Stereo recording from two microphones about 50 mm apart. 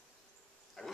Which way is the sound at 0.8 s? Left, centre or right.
Centre.